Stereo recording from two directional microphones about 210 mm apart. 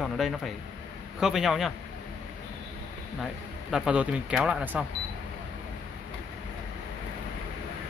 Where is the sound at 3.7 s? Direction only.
5° right (ahead or behind).